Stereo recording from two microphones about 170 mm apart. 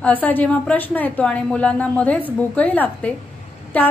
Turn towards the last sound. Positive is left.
turn(degrees=10)  # may be behind; listen again after turning